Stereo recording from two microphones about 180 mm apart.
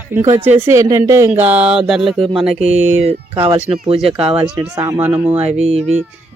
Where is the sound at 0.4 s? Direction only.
15° right (ahead or behind).